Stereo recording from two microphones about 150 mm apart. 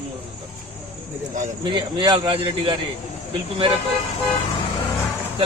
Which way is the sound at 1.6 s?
35° right (ahead or behind).